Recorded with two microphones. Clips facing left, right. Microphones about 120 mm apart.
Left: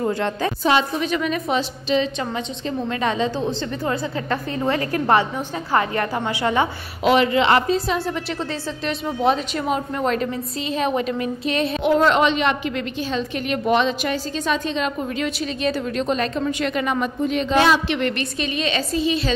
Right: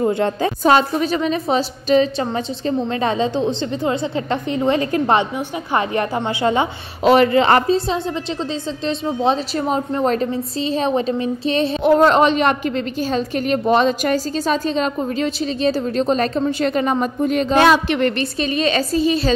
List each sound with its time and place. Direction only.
0.0 s a woman's voice: 25° right (ahead or behind)
0.7 s a woman's voice: 45° right (ahead or behind); by 7.1 s 25° right (ahead or behind)
7.1 s speech: 40° right (ahead or behind)
8.8 s a woman's voice: 25° right (ahead or behind)